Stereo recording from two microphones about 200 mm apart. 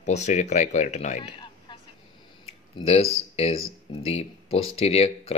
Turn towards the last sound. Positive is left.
turn(degrees=30)  # may be behind; listen again after turning